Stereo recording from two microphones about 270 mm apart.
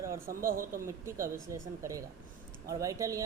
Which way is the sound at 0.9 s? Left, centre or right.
Centre.